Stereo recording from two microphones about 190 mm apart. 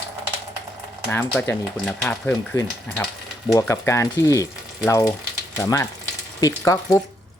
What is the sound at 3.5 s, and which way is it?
Speech, 15° left (ahead or behind).